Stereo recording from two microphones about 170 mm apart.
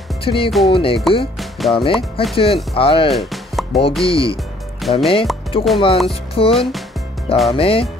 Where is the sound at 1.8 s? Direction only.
35° left (ahead or behind).